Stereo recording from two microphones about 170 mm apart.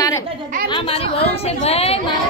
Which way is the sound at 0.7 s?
30° left (ahead or behind).